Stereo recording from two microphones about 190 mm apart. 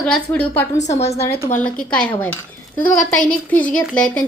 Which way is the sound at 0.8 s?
35° left (ahead or behind).